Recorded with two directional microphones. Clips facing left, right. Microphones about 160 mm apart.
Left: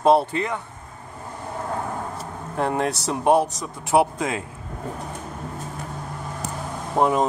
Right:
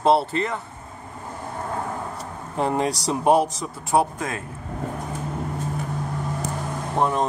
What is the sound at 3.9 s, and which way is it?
Speech, 15° left (ahead or behind).